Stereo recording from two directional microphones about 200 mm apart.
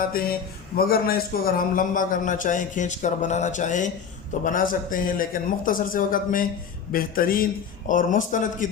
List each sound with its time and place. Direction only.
0.1 s a man's voice: 45° left (ahead or behind)